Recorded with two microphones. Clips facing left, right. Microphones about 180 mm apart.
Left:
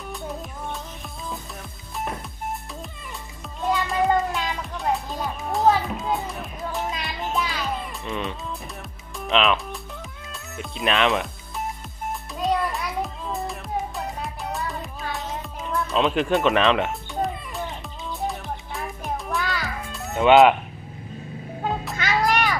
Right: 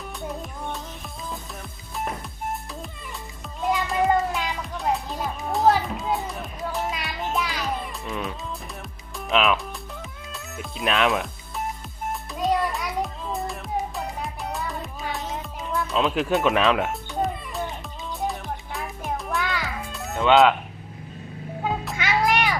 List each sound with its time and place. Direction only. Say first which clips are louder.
0.1 s music: left 1 dB; centre (ahead or behind)
2.0 s music: even; centre (ahead or behind)
3.8 s music: even; centre (ahead or behind)
20.2 s speech: left 3 dB; 15° left (ahead or behind)
21.6 s music: even; 5° right (ahead or behind)